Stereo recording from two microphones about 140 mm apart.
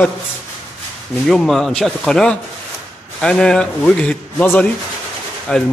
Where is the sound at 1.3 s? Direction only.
Centre (ahead or behind).